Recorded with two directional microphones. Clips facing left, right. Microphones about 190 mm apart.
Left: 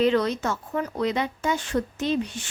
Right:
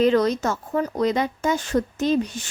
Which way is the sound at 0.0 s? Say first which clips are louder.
Right 3 dB; 40° right (ahead or behind).